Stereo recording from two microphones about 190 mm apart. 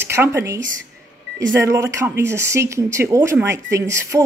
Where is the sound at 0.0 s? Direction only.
15° right (ahead or behind).